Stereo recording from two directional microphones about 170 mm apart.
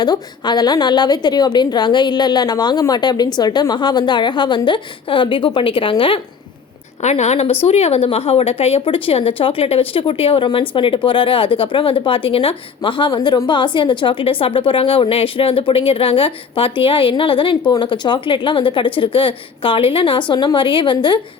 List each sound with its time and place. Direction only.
0.0 s a woman's voice: 25° left (ahead or behind)